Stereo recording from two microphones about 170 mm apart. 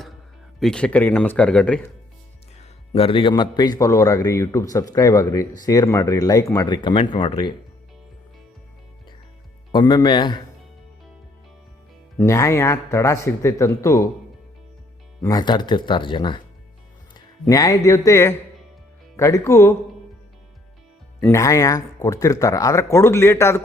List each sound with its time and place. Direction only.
0.6 s speech: 5° left (ahead or behind)
2.6 s a man's voice: 35° left (ahead or behind)
9.7 s a man's voice: 25° left (ahead or behind)
12.1 s speech: 15° left (ahead or behind)
15.2 s a man's voice: 25° left (ahead or behind)
17.4 s speech: 20° left (ahead or behind)
21.2 s speech: 15° left (ahead or behind)